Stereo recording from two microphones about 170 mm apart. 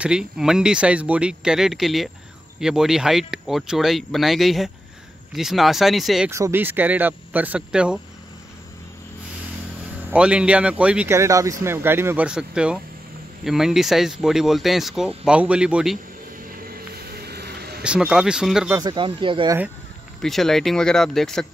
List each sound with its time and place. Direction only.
0.0 s speech: 5° right (ahead or behind)
6.3 s speech: 15° right (ahead or behind)
10.1 s speech: 5° right (ahead or behind)
11.1 s speech: 20° right (ahead or behind)
16.6 s a sound: 65° right (ahead or behind)
17.8 s speech: 5° right (ahead or behind)
18.8 s speech: 25° right (ahead or behind)
20.2 s speech: centre (ahead or behind)